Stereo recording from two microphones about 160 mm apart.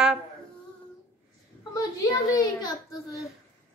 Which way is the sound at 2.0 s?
25° left (ahead or behind).